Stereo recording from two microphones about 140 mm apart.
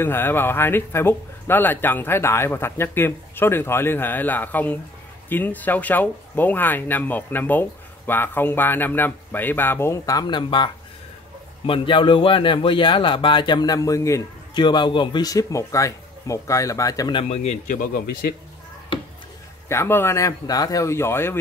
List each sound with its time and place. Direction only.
0.0 s speech: 15° left (ahead or behind)
14.5 s speech: 35° left (ahead or behind); by 17.6 s 50° left (ahead or behind)
17.6 s speech: 85° left
19.7 s speech: 15° left (ahead or behind)